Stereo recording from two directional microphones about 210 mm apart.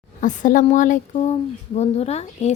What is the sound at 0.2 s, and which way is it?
Speech, 35° left (ahead or behind).